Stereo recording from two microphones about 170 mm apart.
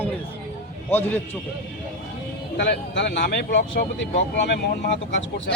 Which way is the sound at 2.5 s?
90° left.